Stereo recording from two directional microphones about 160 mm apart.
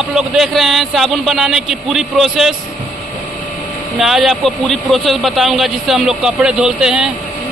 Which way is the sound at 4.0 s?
Centre (ahead or behind).